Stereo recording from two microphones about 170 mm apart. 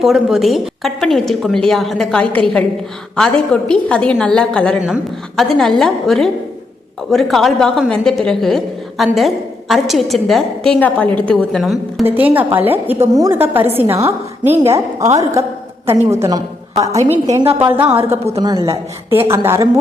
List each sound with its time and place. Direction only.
0.0 s a woman's voice: centre (ahead or behind)
12.0 s a woman's voice: 10° right (ahead or behind)